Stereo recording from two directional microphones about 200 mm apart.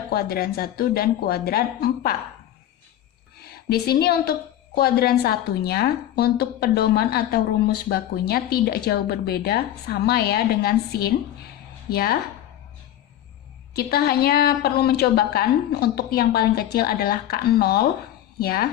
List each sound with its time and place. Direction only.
0.1 s a woman's voice: 50° left (ahead or behind)
3.4 s a woman's voice: 50° left (ahead or behind)
13.7 s a woman's voice: 50° left (ahead or behind)